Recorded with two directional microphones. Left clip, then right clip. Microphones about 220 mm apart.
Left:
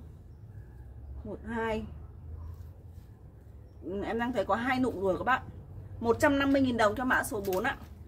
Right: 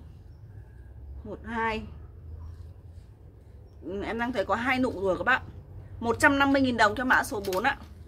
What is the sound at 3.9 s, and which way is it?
A woman's voice, 10° right (ahead or behind).